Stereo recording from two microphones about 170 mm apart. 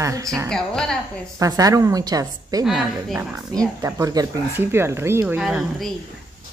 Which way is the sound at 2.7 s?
Centre (ahead or behind).